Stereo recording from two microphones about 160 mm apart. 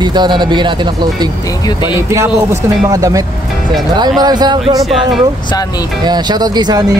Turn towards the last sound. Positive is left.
turn(degrees=-25)  # may be behind; listen again after turning